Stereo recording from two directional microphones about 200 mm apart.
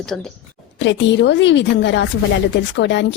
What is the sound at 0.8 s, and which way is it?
A woman's voice, 65° left (ahead or behind).